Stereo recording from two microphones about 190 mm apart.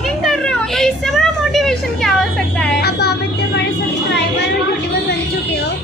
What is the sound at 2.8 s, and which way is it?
Music, 55° left (ahead or behind).